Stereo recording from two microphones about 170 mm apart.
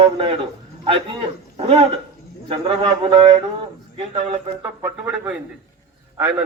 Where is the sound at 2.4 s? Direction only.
30° right (ahead or behind).